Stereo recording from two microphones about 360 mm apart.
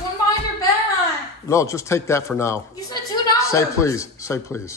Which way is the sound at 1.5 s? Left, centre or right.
Centre.